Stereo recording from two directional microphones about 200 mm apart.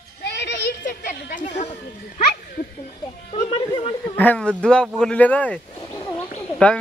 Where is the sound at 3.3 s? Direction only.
30° left (ahead or behind).